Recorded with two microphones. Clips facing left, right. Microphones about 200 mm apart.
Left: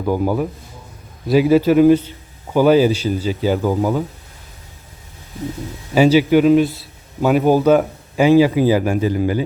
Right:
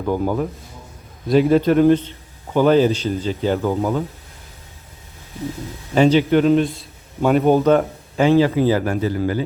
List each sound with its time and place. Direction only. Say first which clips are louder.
0.0 s a man's voice: left 2 dB; 10° left (ahead or behind)
5.9 s a man's voice: left 2 dB; 5° left (ahead or behind)